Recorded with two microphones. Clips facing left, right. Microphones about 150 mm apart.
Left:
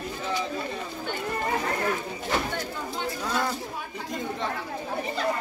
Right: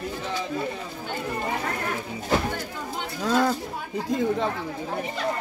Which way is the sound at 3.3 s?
90° right.